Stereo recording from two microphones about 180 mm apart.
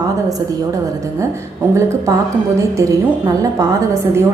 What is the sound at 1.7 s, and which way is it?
Speech, 15° right (ahead or behind).